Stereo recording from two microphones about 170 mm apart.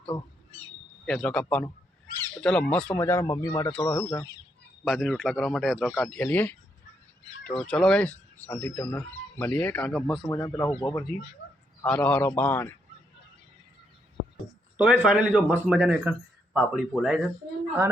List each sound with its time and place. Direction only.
1.0 s speech: 5° left (ahead or behind)
4.9 s speech: centre (ahead or behind)
14.8 s speech: 5° right (ahead or behind)